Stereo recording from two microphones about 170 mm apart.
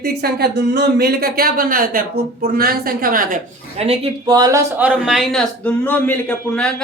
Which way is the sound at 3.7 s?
35° right (ahead or behind).